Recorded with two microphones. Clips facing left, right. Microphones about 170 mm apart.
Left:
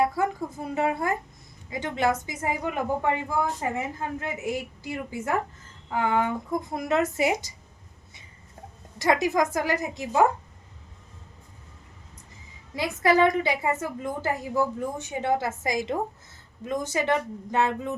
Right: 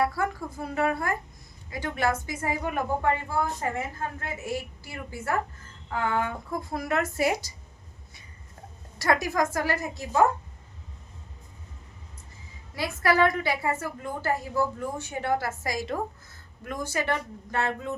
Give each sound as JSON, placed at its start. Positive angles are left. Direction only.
{"t": 0.0, "sound": "speech", "side_deg": 20}
{"t": 9.0, "sound": "a woman's voice", "side_deg": 20}
{"t": 12.7, "sound": "speech", "side_deg": 20}